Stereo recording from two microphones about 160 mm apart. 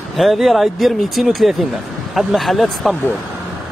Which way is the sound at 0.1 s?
Centre (ahead or behind).